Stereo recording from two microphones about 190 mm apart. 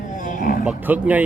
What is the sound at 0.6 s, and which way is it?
Speech, 5° right (ahead or behind).